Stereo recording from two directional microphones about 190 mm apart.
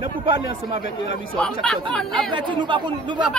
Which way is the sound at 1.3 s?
5° left (ahead or behind).